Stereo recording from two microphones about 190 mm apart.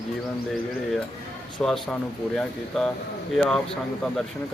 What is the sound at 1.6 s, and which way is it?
Speech, 5° left (ahead or behind).